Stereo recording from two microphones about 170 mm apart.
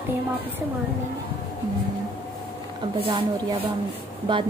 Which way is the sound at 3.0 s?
30° right (ahead or behind).